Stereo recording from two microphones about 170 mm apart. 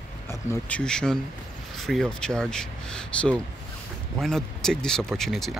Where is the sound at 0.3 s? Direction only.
10° left (ahead or behind).